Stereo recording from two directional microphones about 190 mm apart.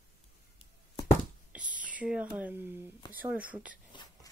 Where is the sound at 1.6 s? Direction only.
45° right (ahead or behind).